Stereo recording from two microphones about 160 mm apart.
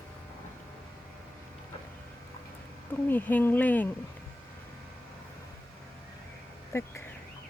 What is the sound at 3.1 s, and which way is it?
Speech, 10° left (ahead or behind).